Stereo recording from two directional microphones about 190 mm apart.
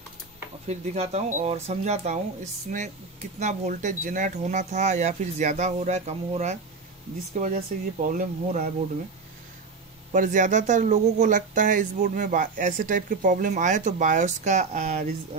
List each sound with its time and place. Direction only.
0.7 s speech: 35° right (ahead or behind)
10.1 s speech: 40° right (ahead or behind)